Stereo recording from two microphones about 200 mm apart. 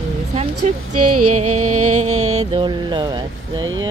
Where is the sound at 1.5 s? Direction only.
90° right.